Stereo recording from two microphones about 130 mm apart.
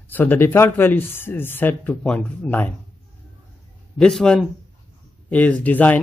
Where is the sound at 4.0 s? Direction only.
5° left (ahead or behind).